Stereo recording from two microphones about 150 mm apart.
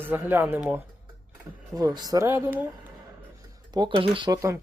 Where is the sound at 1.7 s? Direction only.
25° right (ahead or behind).